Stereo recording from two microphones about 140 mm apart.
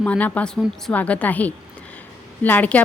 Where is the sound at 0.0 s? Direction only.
10° left (ahead or behind).